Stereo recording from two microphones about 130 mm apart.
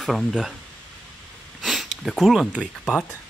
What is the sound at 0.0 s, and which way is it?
Speech, centre (ahead or behind).